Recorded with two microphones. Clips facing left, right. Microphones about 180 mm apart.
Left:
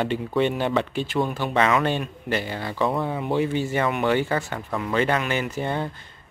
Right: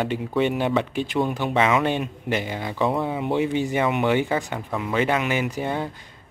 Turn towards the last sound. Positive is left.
turn(degrees=-10)  # may be behind; listen again after turning